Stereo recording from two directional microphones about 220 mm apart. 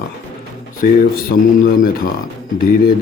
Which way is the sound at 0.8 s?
40° left (ahead or behind).